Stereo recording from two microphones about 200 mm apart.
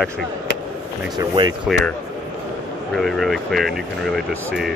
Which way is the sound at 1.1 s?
20° right (ahead or behind).